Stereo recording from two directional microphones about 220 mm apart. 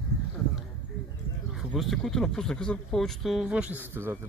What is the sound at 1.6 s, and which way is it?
Speech, centre (ahead or behind).